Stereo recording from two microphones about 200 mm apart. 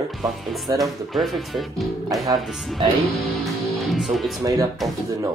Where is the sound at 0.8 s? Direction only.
Centre (ahead or behind).